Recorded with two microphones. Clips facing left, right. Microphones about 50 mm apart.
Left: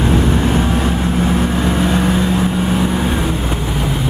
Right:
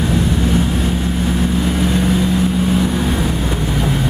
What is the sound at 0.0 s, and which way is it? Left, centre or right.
Vehicle, left.